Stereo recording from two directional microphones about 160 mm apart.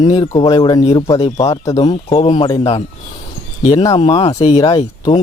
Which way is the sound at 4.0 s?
40° left (ahead or behind).